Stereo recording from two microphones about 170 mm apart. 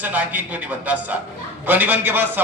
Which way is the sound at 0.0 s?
10° right (ahead or behind).